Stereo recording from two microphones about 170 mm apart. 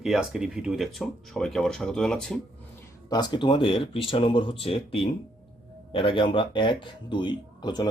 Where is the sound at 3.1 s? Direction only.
25° left (ahead or behind).